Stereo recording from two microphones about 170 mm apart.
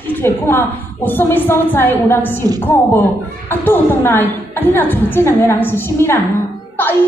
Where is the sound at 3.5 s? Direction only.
10° left (ahead or behind).